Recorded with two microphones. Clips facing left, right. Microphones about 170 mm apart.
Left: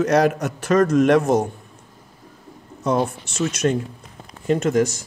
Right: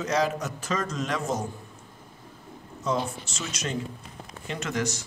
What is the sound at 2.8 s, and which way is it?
Speech, 60° left (ahead or behind).